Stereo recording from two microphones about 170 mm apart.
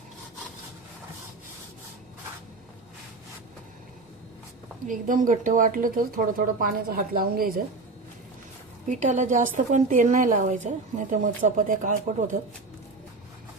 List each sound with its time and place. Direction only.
4.9 s speech: 50° right (ahead or behind)
8.9 s a woman's voice: 45° right (ahead or behind)